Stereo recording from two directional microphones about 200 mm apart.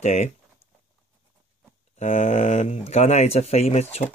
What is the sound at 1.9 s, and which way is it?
Speech, 35° left (ahead or behind).